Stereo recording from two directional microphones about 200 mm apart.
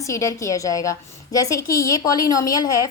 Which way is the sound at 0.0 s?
15° left (ahead or behind).